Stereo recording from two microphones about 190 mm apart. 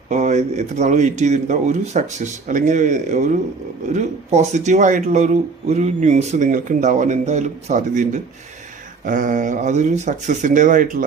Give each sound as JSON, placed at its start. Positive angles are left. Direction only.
{"t": 0.1, "sound": "speech", "side_deg": -40}